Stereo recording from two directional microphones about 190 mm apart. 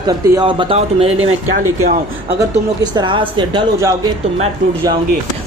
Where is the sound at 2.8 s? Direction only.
25° right (ahead or behind).